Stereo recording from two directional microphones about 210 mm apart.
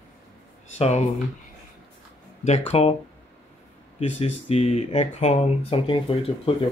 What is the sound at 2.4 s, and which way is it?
Speech, 30° left (ahead or behind).